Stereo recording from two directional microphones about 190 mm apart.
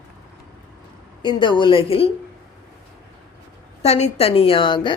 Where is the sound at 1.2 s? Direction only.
25° left (ahead or behind).